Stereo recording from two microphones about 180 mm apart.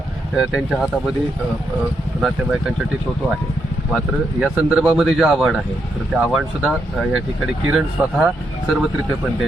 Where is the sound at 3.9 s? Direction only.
5° right (ahead or behind).